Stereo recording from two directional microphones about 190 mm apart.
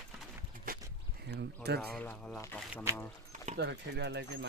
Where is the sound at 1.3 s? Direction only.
60° right (ahead or behind).